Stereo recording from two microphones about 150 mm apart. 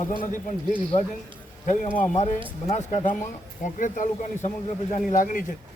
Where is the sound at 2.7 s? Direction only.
50° left (ahead or behind).